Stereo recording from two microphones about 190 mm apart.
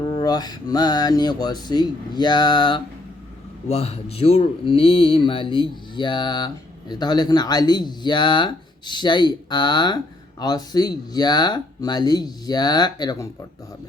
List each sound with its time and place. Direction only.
0.0 s speech: 20° left (ahead or behind)